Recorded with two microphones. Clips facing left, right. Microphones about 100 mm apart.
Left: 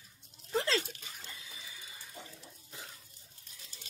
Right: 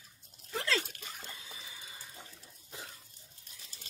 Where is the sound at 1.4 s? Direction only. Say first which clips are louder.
Right 1 dB; 30° right (ahead or behind).